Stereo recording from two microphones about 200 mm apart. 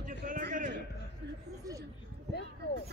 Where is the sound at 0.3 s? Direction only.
40° right (ahead or behind).